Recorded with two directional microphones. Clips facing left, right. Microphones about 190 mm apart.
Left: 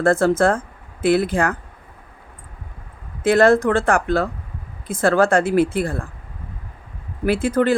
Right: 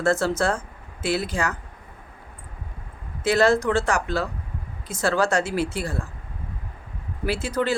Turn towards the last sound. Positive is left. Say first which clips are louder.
# left 7 dB
turn(degrees=50)  # may be behind; listen again after turning